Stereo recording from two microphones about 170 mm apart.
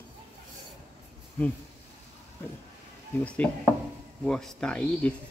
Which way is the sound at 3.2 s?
10° left (ahead or behind).